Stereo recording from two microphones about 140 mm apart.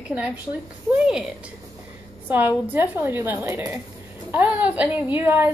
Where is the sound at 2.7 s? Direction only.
10° right (ahead or behind).